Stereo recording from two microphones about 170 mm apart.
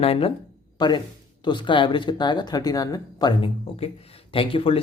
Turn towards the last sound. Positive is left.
turn(degrees=30)  # may be behind; listen again after turning